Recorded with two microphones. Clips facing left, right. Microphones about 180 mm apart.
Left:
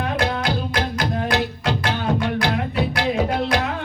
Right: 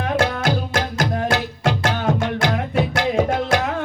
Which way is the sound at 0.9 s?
45° right (ahead or behind).